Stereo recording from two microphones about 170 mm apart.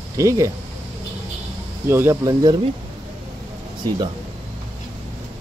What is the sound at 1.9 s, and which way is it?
Speech, 15° right (ahead or behind).